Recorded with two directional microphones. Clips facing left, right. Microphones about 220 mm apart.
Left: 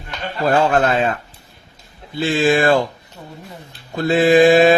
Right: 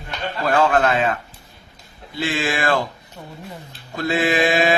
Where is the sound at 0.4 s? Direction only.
35° left (ahead or behind).